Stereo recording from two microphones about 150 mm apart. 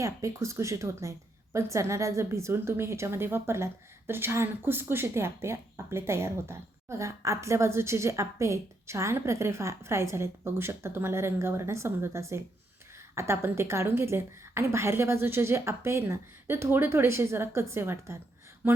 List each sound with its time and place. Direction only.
0.0 s a woman's voice: 20° right (ahead or behind)